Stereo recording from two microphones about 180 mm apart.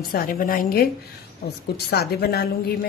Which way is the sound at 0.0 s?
55° left (ahead or behind).